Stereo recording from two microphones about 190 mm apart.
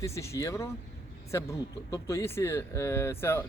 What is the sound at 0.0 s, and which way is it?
Speech, 15° left (ahead or behind).